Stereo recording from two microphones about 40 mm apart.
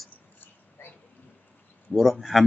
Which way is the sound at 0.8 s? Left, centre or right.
Left.